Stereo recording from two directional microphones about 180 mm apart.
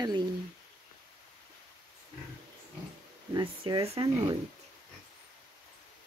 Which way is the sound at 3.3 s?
30° right (ahead or behind).